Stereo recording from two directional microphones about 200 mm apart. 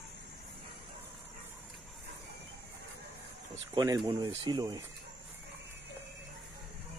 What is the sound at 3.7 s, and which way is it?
Speech, 20° right (ahead or behind).